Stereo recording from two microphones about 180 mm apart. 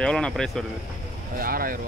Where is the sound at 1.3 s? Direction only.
55° right (ahead or behind).